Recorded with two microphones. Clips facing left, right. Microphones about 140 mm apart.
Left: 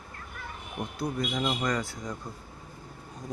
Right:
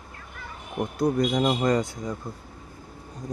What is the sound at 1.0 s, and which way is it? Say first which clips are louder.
Speech: right 8 dB; 45° right (ahead or behind).